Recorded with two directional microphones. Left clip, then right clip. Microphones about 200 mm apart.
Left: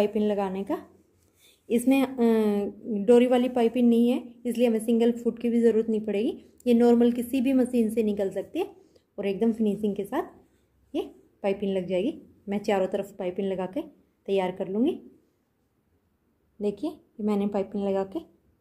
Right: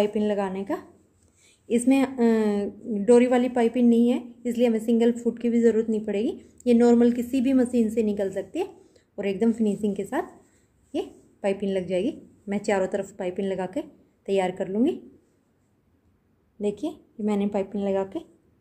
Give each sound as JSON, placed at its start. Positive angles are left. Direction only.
{"t": 0.0, "sound": "a woman's voice", "side_deg": 5}
{"t": 16.6, "sound": "a woman's voice", "side_deg": 5}